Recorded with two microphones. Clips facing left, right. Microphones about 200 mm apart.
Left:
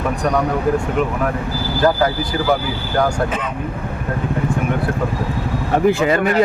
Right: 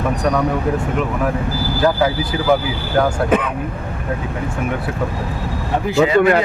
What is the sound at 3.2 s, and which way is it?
Speech, 55° right (ahead or behind).